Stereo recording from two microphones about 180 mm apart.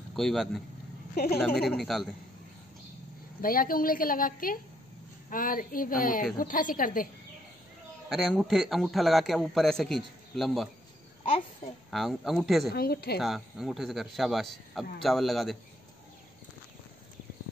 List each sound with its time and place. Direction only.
0.1 s a man's voice: centre (ahead or behind)
1.1 s a woman's voice: 60° left (ahead or behind)
1.5 s a man's voice: 5° left (ahead or behind)
3.3 s a woman's voice: 50° left (ahead or behind)
8.1 s a man's voice: centre (ahead or behind)
11.9 s a man's voice: centre (ahead or behind)
12.7 s a woman's voice: 60° left (ahead or behind)
13.2 s a man's voice: centre (ahead or behind)